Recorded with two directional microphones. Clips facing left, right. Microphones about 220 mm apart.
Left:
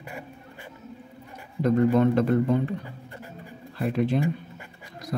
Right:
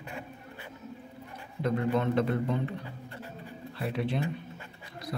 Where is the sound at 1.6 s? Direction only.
45° left (ahead or behind).